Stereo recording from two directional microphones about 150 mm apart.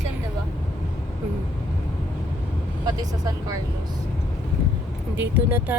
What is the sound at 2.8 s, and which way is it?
Speech, 25° right (ahead or behind).